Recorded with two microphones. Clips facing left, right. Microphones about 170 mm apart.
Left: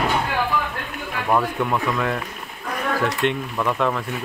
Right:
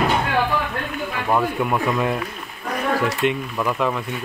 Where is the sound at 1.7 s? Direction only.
15° right (ahead or behind).